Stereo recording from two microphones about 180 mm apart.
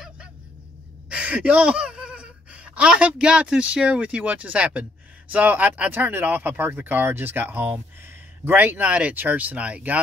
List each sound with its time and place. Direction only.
1.0 s speech: 5° right (ahead or behind)